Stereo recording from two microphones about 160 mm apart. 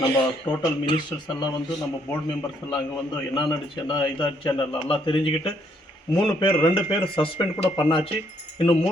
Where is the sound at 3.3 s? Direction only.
30° left (ahead or behind).